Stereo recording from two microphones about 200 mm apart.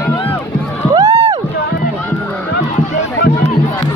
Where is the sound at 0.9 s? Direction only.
25° right (ahead or behind).